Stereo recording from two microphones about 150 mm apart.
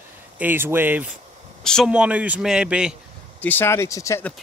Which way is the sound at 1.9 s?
10° right (ahead or behind).